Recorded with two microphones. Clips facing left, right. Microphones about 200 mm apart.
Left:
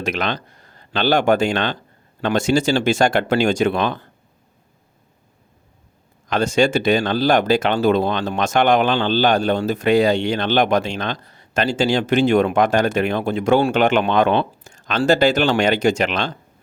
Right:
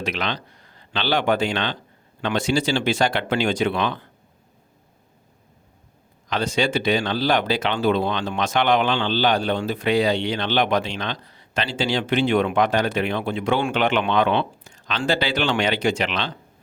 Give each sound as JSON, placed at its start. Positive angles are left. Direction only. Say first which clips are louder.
{"t": 0.0, "sound": "speech", "louder": "left 4 dB", "side_deg": 45}
{"t": 6.2, "sound": "speech", "louder": "left 6 dB", "side_deg": 50}